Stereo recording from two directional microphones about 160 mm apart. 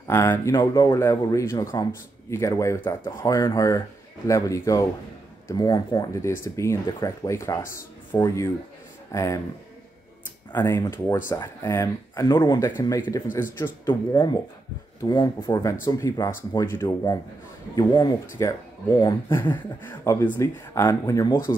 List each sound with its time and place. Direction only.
0.1 s speech: 15° left (ahead or behind)
10.5 s speech: 15° left (ahead or behind)
14.1 s speech: 30° left (ahead or behind)